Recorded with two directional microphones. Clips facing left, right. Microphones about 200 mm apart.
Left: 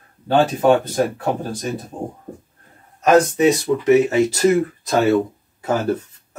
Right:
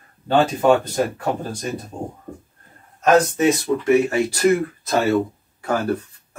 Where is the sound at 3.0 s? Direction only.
20° left (ahead or behind).